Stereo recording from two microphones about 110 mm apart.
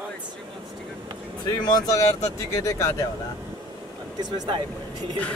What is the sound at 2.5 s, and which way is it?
Speech, 30° left (ahead or behind).